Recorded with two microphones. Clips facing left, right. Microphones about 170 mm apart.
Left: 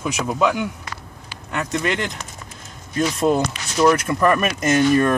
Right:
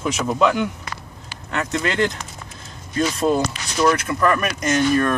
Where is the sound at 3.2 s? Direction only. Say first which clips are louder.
Left 2 dB; 20° left (ahead or behind).